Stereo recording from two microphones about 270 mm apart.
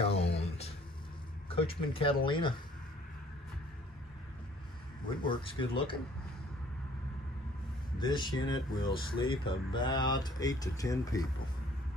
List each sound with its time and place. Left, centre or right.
0.0 s a sound: left
1.5 s speech: left
5.2 s speech: centre
8.0 s speech: centre